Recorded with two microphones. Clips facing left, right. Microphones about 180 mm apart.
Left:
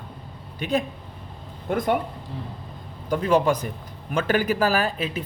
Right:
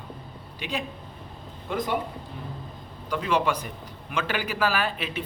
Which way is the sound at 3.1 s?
40° left (ahead or behind).